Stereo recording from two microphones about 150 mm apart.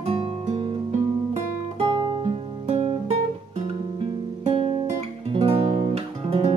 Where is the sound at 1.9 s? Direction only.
35° right (ahead or behind).